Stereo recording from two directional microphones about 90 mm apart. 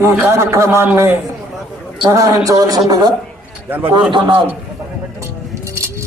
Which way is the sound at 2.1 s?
40° right (ahead or behind).